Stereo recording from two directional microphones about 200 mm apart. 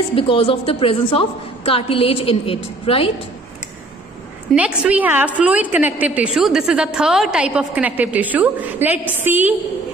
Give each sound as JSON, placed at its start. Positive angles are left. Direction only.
{"t": 0.1, "sound": "a woman's voice", "side_deg": 25}
{"t": 4.6, "sound": "a woman's voice", "side_deg": -5}